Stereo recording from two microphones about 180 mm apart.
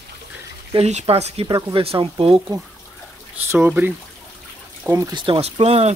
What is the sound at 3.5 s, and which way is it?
Speech, 10° right (ahead or behind).